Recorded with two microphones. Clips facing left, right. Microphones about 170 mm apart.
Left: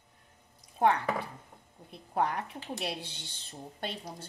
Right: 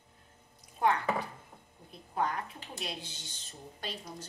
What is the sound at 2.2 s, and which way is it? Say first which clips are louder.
A woman's voice: left 3 dB; 65° left (ahead or behind).